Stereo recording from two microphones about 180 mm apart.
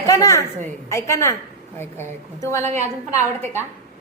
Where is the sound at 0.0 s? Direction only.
20° left (ahead or behind).